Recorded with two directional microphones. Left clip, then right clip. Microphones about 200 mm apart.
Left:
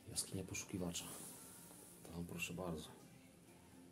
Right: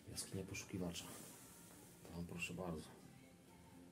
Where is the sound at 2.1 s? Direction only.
30° left (ahead or behind).